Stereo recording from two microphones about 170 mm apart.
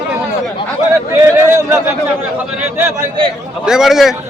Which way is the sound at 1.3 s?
15° right (ahead or behind).